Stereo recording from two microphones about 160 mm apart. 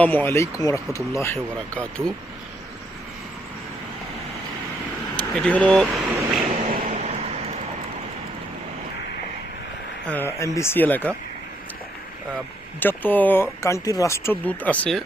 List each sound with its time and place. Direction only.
0.0 s speech: 10° left (ahead or behind)
5.1 s vehicle: 5° left (ahead or behind)
6.7 s a sound: 40° right (ahead or behind)
10.1 s speech: 15° left (ahead or behind)
12.8 s speech: 10° left (ahead or behind)